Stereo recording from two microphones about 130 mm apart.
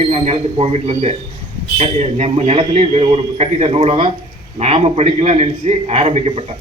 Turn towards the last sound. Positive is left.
turn(degrees=-50)  # may be behind; listen again after turning